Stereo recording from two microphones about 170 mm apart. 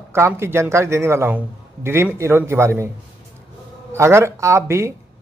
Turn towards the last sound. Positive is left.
turn(degrees=-15)  # may be behind; listen again after turning